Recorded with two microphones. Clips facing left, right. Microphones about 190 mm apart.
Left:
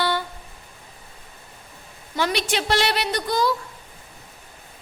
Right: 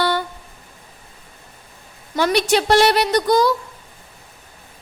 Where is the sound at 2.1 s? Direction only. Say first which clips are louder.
Right 7 dB; 40° right (ahead or behind).